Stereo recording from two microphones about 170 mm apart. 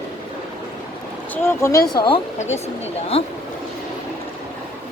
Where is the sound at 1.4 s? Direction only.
15° left (ahead or behind).